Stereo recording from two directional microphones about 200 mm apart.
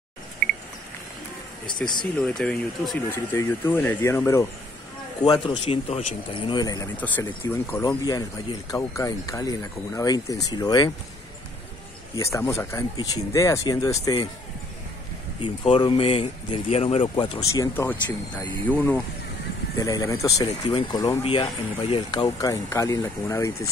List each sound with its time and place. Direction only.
1.8 s speech: 5° left (ahead or behind)
12.2 s speech: 15° left (ahead or behind)
15.4 s speech: 25° left (ahead or behind)